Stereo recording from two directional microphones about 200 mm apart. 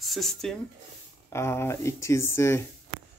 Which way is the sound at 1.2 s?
15° left (ahead or behind).